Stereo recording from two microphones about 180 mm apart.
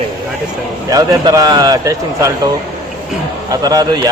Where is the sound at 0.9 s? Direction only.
20° right (ahead or behind).